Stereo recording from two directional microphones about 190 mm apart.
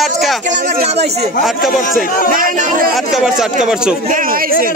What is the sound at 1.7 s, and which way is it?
Speech, 45° left (ahead or behind).